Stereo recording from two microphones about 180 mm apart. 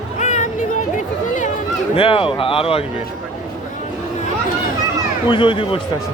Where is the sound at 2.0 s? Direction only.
30° left (ahead or behind).